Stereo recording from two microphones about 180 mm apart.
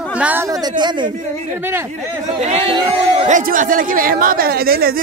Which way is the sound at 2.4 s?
35° right (ahead or behind).